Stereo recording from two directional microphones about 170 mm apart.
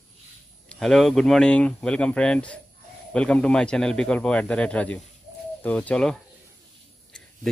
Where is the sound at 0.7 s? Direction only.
Centre (ahead or behind).